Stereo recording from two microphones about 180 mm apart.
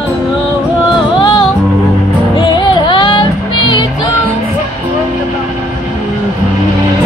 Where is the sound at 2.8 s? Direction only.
25° left (ahead or behind).